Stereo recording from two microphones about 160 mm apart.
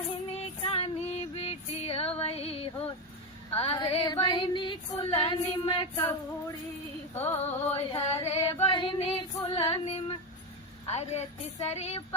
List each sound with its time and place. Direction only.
0.6 s female singing: 35° left (ahead or behind)
2.2 s music: 40° left (ahead or behind)
3.5 s female singing: 35° left (ahead or behind)
7.1 s music: 15° left (ahead or behind)
7.4 s a woman's voice: 40° left (ahead or behind)
8.6 s female singing: 30° left (ahead or behind)
10.8 s a woman's voice: 40° left (ahead or behind)